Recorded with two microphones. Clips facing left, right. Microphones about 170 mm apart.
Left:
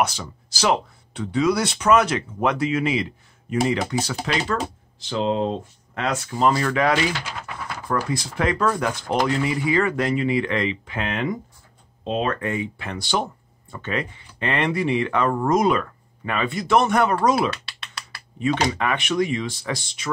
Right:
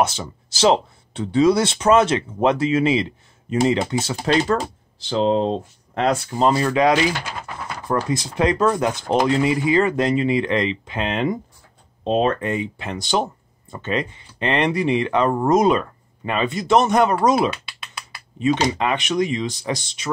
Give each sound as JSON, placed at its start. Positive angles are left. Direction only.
{"t": 0.0, "sound": "speech", "side_deg": -25}
{"t": 8.1, "sound": "speech", "side_deg": -20}